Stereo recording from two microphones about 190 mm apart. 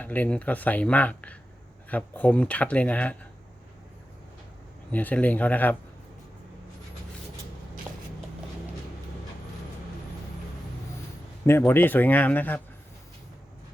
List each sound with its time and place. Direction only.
0.0 s speech: 10° left (ahead or behind)
4.9 s speech: 10° left (ahead or behind)
11.4 s speech: 10° left (ahead or behind)